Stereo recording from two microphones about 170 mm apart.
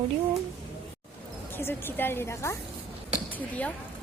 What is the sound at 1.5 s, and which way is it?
A woman's voice, 15° left (ahead or behind).